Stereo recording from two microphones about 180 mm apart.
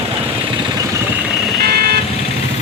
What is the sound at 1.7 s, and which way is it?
Vehicle, 60° right (ahead or behind).